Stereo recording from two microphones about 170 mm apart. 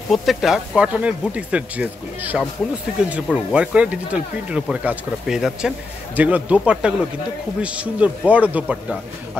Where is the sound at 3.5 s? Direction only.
5° right (ahead or behind).